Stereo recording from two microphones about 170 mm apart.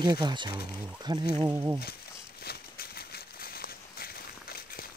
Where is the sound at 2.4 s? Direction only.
65° left (ahead or behind).